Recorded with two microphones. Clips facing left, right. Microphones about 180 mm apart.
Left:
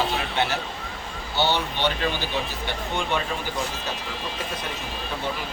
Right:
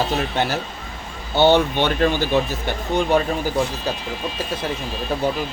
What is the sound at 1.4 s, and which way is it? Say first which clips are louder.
Speech: right 9 dB; 50° right (ahead or behind).